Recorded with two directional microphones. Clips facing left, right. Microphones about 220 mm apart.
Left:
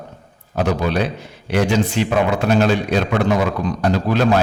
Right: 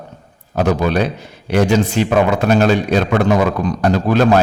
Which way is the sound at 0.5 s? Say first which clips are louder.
Right 3 dB; 45° right (ahead or behind).